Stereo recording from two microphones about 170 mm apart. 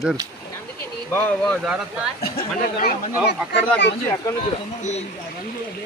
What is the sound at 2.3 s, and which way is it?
Speech, 60° left (ahead or behind).